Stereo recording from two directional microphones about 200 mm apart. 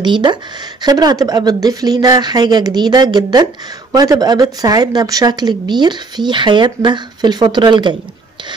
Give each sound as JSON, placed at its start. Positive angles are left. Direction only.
{"t": 0.0, "sound": "speech", "side_deg": -20}